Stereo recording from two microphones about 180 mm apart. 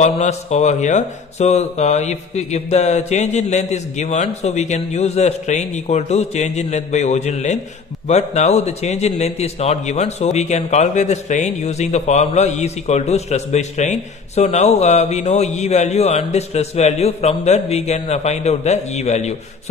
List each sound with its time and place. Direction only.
0.0 s a man's voice: 40° left (ahead or behind)